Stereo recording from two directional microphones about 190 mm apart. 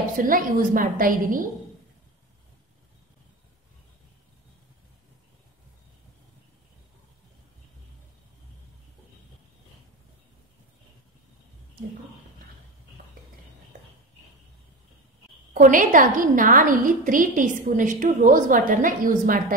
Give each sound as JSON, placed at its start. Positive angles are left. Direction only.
{"t": 0.2, "sound": "a woman's voice", "side_deg": -45}
{"t": 15.5, "sound": "a woman's voice", "side_deg": -45}